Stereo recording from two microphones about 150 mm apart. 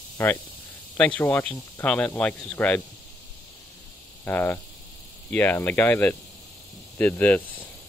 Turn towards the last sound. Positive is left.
turn(degrees=10)  # may be behind; listen again after turning